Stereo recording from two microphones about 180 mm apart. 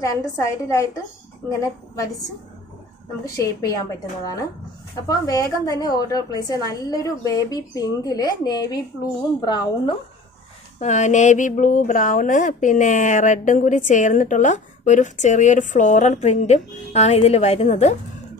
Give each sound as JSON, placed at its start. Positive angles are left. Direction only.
{"t": 0.0, "sound": "a woman's voice", "side_deg": 15}
{"t": 3.3, "sound": "a woman's voice", "side_deg": 20}
{"t": 10.8, "sound": "speech", "side_deg": 40}